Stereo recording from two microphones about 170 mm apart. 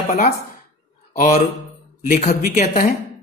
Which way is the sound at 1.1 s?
50° left (ahead or behind).